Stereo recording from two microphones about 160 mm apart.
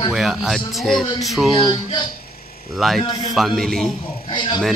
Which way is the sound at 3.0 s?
25° left (ahead or behind).